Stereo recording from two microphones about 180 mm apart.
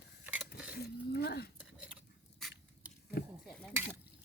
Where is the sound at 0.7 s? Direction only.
60° left (ahead or behind).